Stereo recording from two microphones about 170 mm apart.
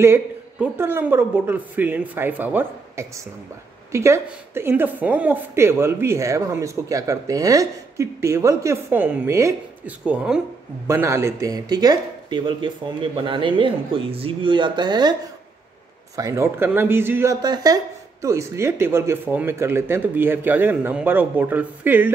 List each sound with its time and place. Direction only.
0.0 s speech: 15° right (ahead or behind)
16.2 s speech: 15° right (ahead or behind)